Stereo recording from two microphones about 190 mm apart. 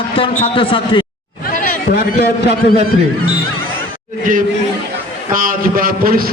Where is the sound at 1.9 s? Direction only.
50° left (ahead or behind).